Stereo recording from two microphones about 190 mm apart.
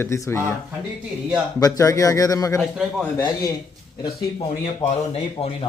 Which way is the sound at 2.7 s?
5° right (ahead or behind).